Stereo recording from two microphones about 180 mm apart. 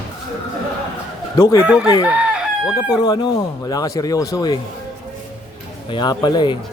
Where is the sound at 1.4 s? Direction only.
15° left (ahead or behind).